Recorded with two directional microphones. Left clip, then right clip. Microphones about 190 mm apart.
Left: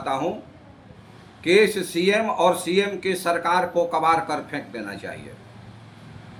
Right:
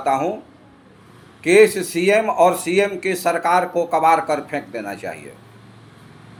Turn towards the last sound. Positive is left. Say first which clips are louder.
# right 5 dB
turn(degrees=-25)  # may be behind; listen again after turning